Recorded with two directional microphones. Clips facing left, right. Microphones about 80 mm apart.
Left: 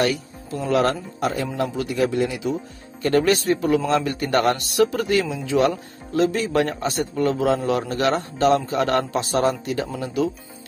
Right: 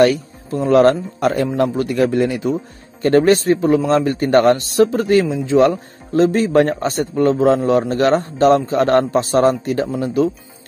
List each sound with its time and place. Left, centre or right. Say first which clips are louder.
0.0 s speech: right 9 dB; right
3.0 s a man's voice: right 6 dB; right